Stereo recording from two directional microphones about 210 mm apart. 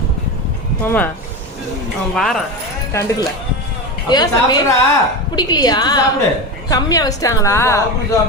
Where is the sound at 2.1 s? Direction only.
Centre (ahead or behind).